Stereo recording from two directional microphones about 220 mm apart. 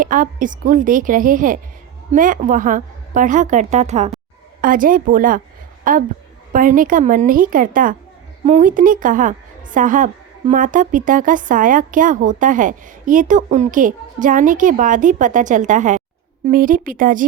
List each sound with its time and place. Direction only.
0.0 s a woman's voice: 35° right (ahead or behind)